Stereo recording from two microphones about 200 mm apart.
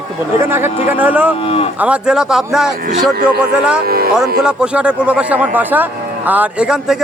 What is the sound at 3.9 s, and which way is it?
Speech, 50° right (ahead or behind).